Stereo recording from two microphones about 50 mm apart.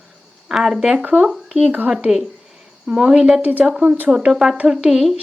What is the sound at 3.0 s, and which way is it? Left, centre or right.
Speech, centre.